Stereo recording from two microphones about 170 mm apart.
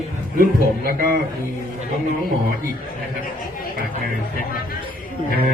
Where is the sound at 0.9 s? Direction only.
60° right (ahead or behind).